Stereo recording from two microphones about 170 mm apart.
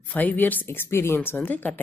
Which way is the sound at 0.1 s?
10° left (ahead or behind).